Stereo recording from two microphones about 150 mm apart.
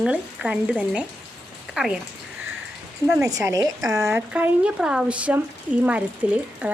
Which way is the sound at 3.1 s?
20° right (ahead or behind).